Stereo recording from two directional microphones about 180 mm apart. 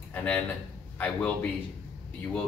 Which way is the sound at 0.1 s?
10° left (ahead or behind).